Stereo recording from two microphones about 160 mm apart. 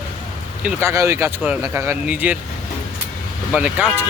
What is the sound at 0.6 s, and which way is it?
A man's voice, 15° right (ahead or behind).